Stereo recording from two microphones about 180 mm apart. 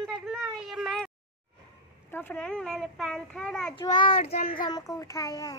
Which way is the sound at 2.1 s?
10° left (ahead or behind).